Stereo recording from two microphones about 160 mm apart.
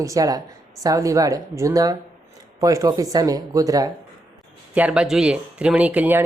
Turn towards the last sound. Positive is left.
turn(degrees=-10)  # may be behind; listen again after turning